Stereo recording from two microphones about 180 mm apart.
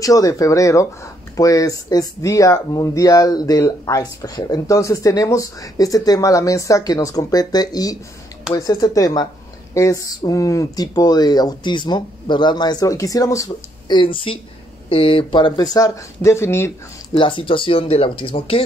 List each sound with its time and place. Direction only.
0.0 s speech: 20° left (ahead or behind)
17.1 s speech: 30° left (ahead or behind)